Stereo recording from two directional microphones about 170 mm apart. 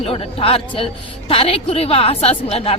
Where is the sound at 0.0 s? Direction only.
35° left (ahead or behind).